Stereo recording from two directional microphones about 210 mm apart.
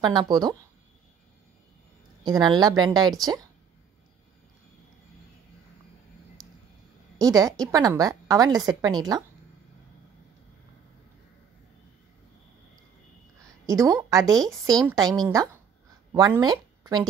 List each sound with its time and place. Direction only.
0.0 s a woman's voice: 20° right (ahead or behind)
2.2 s a woman's voice: 20° right (ahead or behind)
7.2 s a woman's voice: 15° right (ahead or behind)
13.7 s a woman's voice: 15° right (ahead or behind)